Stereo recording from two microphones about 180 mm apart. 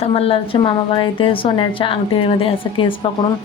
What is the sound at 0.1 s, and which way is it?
A woman's voice, 30° left (ahead or behind).